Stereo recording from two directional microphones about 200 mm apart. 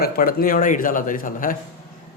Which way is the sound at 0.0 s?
45° left (ahead or behind).